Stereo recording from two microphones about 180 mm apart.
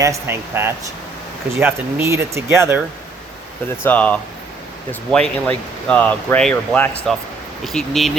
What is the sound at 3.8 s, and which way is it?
Speech, 10° left (ahead or behind).